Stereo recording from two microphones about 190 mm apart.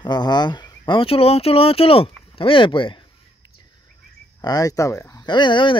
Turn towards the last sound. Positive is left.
turn(degrees=25)  # may be behind; listen again after turning